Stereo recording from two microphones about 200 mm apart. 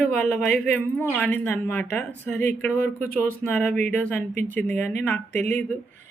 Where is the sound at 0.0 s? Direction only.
5° left (ahead or behind).